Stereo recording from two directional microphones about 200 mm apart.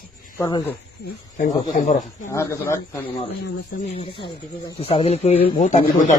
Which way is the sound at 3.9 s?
25° left (ahead or behind).